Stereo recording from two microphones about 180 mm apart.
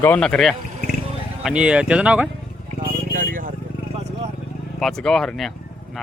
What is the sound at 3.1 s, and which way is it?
Vehicle, 50° right (ahead or behind).